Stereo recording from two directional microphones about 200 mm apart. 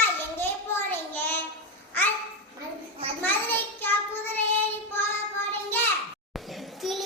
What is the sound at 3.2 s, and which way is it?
Child singing, 10° left (ahead or behind).